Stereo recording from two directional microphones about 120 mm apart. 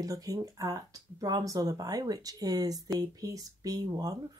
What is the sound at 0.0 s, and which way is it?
Speech, 30° right (ahead or behind).